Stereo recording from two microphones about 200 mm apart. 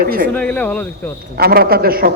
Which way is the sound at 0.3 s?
5° left (ahead or behind).